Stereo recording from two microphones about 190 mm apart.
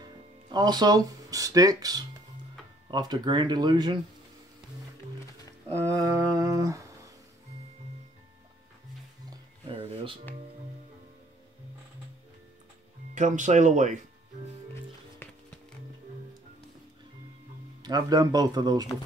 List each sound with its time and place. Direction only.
0.0 s speech: 20° right (ahead or behind)
5.8 s a sound: 15° right (ahead or behind)
9.7 s a sound: 25° right (ahead or behind)
13.1 s speech: 40° right (ahead or behind)
15.2 s music: 10° left (ahead or behind)
17.8 s speech: 20° right (ahead or behind)